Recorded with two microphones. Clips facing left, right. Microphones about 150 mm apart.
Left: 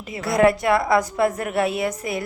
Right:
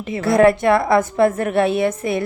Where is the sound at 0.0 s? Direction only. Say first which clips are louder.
Right 4 dB; 25° right (ahead or behind).